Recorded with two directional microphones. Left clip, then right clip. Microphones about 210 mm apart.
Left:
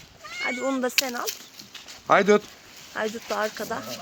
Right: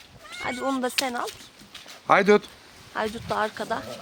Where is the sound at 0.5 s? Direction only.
10° left (ahead or behind).